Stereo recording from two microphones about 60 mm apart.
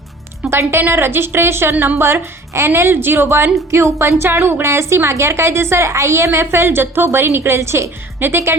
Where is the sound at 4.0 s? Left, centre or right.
Right.